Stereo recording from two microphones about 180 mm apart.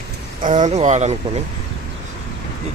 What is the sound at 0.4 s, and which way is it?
Speech, 45° right (ahead or behind).